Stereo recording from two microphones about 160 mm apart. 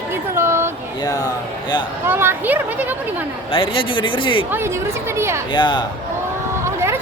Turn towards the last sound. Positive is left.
turn(degrees=-15)  # may be behind; listen again after turning